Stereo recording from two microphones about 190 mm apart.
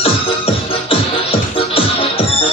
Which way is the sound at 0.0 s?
30° left (ahead or behind).